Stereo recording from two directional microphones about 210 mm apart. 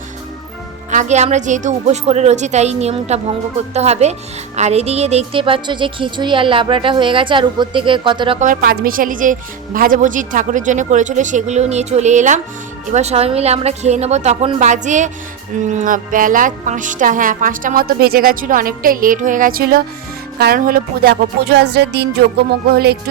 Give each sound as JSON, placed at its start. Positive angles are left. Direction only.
{"t": 0.9, "sound": "speech", "side_deg": -35}
{"t": 8.4, "sound": "speech", "side_deg": -40}